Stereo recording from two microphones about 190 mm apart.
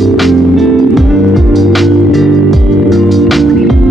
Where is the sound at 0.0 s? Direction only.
Centre (ahead or behind).